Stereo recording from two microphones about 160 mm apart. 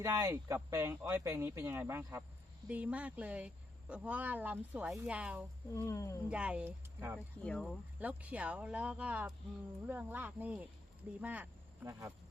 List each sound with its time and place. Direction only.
0.0 s speech: 20° right (ahead or behind)
5.7 s speech: 20° left (ahead or behind)
6.2 s speech: 5° right (ahead or behind)
7.4 s speech: 5° left (ahead or behind)
7.9 s speech: 10° right (ahead or behind)